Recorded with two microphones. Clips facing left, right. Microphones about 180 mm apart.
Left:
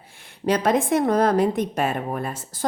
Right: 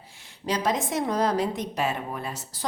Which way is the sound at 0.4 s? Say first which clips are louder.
Left 6 dB; 55° left (ahead or behind).